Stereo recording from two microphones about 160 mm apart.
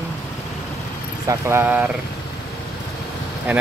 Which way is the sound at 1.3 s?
15° right (ahead or behind).